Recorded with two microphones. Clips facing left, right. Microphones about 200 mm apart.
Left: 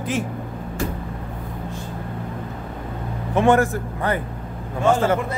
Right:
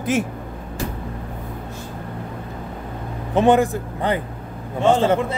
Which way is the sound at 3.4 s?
20° right (ahead or behind).